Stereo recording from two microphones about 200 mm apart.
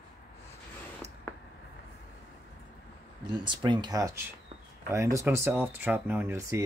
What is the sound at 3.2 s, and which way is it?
Speech, 20° right (ahead or behind).